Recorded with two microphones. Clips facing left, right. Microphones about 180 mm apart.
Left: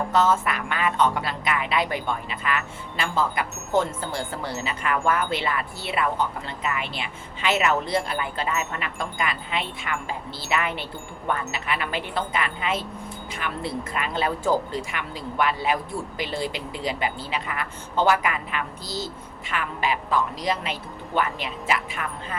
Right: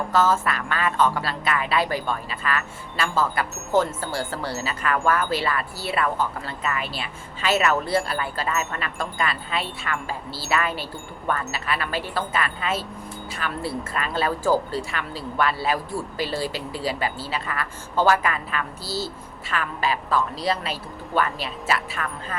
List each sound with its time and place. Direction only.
0.1 s a man's voice: 20° left (ahead or behind)
13.9 s a man's voice: 20° left (ahead or behind)
18.9 s a woman's voice: 10° right (ahead or behind)
19.5 s a woman's voice: 15° left (ahead or behind)